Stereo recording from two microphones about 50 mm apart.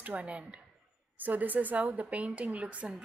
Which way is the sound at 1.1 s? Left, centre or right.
Right.